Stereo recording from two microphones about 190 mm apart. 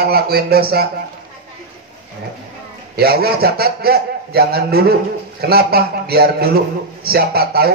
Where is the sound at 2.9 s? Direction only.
55° right (ahead or behind).